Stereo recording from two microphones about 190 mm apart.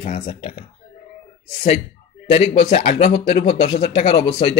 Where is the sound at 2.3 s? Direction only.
30° left (ahead or behind).